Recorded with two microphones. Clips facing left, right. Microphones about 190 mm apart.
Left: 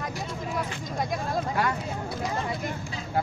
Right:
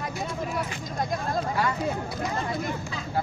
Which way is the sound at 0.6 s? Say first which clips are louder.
Even; 5° left (ahead or behind).